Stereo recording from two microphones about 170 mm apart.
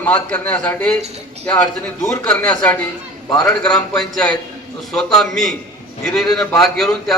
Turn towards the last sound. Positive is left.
turn(degrees=0)  # may be behind; listen again after turning